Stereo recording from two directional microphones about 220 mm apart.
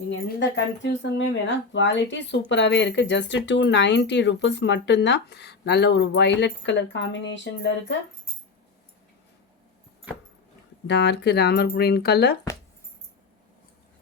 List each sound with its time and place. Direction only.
0.1 s speech: 55° left (ahead or behind)
10.8 s speech: 50° left (ahead or behind)